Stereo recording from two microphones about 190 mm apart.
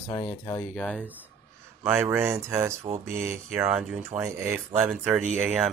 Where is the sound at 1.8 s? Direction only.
10° right (ahead or behind).